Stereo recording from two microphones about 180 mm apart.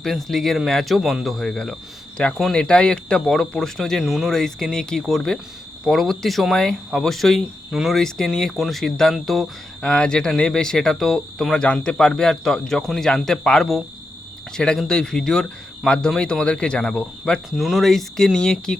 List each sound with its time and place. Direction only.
0.0 s speech: centre (ahead or behind)